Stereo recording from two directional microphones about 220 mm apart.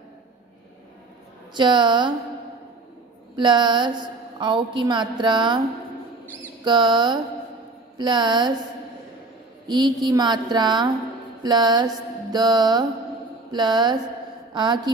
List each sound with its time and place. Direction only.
1.5 s music: 20° right (ahead or behind)
3.3 s music: 20° right (ahead or behind)
6.6 s music: 20° right (ahead or behind)
9.7 s music: 20° right (ahead or behind)
14.5 s a woman's voice: 20° right (ahead or behind)